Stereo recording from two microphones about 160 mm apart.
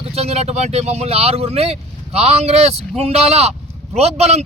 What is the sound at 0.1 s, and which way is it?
Speech, 40° right (ahead or behind).